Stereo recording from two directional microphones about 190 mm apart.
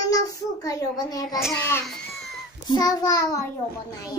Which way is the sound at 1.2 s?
Centre (ahead or behind).